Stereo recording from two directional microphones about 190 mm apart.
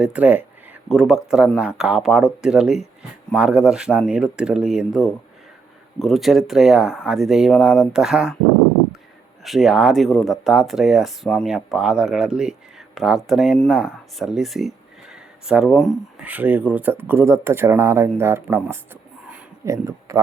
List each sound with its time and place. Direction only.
0.0 s speech: 5° right (ahead or behind)
9.4 s speech: centre (ahead or behind)